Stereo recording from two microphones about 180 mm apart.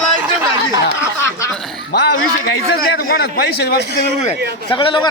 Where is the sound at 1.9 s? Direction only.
65° left (ahead or behind).